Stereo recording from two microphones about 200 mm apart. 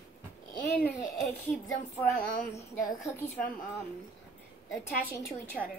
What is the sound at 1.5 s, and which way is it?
Child singing, 5° left (ahead or behind).